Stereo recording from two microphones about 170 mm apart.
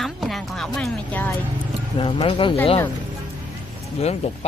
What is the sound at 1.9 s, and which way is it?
Speech, 30° left (ahead or behind).